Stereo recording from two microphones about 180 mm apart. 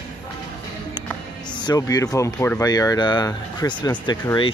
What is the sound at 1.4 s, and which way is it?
Speech, 25° left (ahead or behind).